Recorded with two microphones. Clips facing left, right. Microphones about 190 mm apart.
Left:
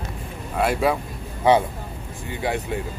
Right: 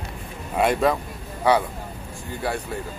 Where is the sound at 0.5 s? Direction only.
5° left (ahead or behind).